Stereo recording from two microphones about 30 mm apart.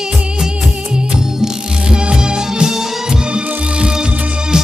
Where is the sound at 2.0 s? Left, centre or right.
Right.